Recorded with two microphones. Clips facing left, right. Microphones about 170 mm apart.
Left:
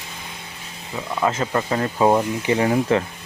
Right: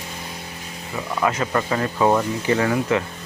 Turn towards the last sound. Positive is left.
turn(degrees=25)  # may be behind; listen again after turning